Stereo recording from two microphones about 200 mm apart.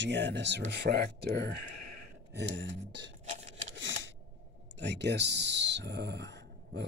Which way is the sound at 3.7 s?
70° right (ahead or behind).